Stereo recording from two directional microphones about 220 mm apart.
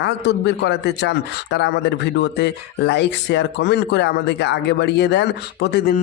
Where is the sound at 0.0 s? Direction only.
50° left (ahead or behind).